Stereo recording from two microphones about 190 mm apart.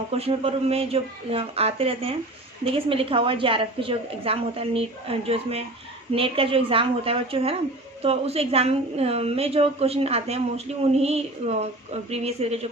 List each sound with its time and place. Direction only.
0.1 s a woman's voice: 30° right (ahead or behind)